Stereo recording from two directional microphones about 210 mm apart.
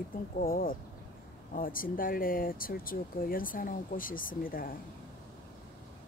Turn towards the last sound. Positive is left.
turn(degrees=40)  # may be behind; listen again after turning